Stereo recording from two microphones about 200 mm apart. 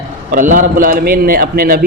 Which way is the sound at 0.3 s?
45° right (ahead or behind).